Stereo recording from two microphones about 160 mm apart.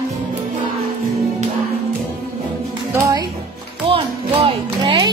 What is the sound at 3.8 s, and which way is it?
Music, 35° right (ahead or behind).